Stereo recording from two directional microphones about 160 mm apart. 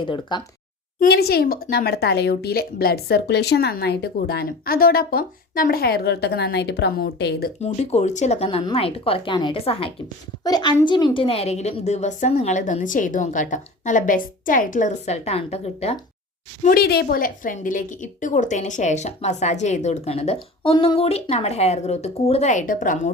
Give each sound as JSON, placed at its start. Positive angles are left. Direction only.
{"t": 0.0, "sound": "speech", "side_deg": 30}
{"t": 0.9, "sound": "speech", "side_deg": 75}
{"t": 7.6, "sound": "speech", "side_deg": 45}
{"t": 10.4, "sound": "a woman's voice", "side_deg": 25}
{"t": 16.6, "sound": "a woman's voice", "side_deg": 70}